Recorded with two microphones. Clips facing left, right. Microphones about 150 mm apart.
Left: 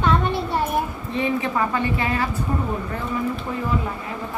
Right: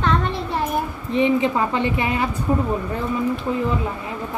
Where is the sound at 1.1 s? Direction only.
20° right (ahead or behind).